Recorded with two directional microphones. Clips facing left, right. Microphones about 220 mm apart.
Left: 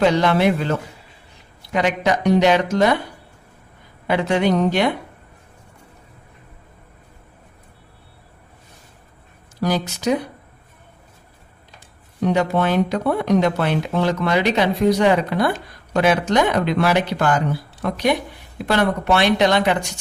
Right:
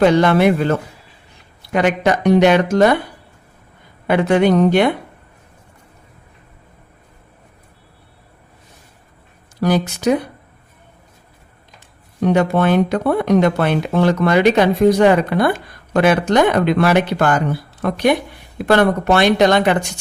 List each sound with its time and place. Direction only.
0.0 s speech: 55° right (ahead or behind)
4.0 s speech: 55° right (ahead or behind)
9.6 s speech: 55° right (ahead or behind)
12.2 s speech: 55° right (ahead or behind)